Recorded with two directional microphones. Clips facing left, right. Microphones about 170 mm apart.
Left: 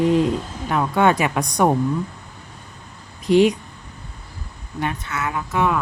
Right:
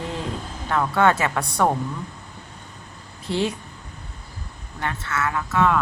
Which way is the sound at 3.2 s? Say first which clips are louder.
Left 9 dB; 15° left (ahead or behind).